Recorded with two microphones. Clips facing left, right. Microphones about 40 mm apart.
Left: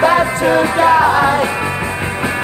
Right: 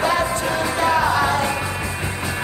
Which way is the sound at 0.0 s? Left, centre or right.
Left.